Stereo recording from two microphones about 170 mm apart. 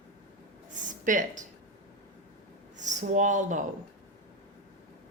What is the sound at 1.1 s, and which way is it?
Speech, 50° right (ahead or behind).